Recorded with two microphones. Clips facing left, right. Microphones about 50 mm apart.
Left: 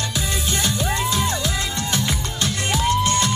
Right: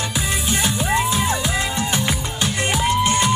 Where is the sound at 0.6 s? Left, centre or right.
Centre.